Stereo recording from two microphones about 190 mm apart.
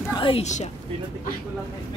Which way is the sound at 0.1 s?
25° left (ahead or behind).